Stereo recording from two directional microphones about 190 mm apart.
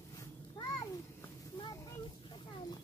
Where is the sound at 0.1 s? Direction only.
15° left (ahead or behind).